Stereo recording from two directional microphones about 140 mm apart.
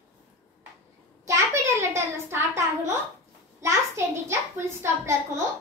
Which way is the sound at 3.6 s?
20° right (ahead or behind).